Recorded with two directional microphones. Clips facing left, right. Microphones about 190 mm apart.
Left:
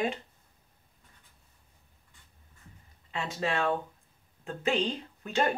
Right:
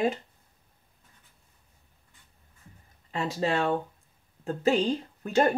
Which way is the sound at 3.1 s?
35° right (ahead or behind).